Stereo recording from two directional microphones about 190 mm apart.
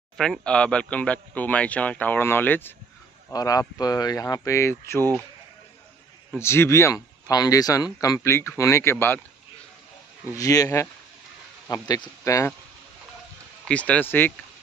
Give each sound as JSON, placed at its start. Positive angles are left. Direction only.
{"t": 0.2, "sound": "speech", "side_deg": 5}
{"t": 6.3, "sound": "speech", "side_deg": 15}
{"t": 10.3, "sound": "speech", "side_deg": 20}
{"t": 13.7, "sound": "speech", "side_deg": 5}